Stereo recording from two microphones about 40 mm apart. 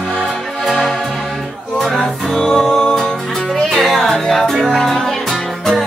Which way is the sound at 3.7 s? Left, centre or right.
Centre.